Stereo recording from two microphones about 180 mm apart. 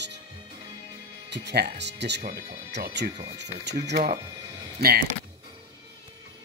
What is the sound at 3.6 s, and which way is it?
Speech, 65° right (ahead or behind).